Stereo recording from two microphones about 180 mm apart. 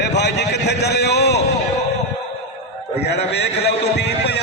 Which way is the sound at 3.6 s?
70° left (ahead or behind).